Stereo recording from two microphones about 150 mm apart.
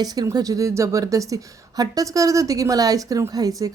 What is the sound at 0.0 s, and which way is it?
A woman's voice, 25° right (ahead or behind).